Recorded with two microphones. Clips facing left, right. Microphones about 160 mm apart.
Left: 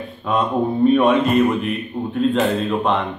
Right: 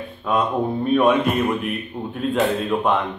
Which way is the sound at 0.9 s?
5° right (ahead or behind).